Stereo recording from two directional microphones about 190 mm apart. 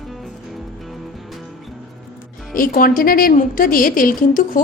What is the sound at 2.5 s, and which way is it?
A woman's voice, 50° left (ahead or behind).